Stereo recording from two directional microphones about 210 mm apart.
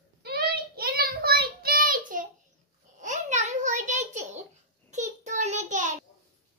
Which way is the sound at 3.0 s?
35° right (ahead or behind).